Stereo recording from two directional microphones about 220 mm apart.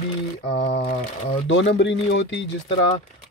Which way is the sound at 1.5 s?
55° left (ahead or behind).